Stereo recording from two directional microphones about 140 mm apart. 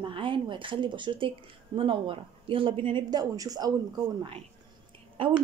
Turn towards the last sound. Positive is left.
turn(degrees=-40)  # may be behind; listen again after turning